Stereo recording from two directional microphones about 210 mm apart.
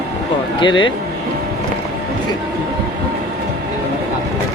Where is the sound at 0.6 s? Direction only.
20° left (ahead or behind).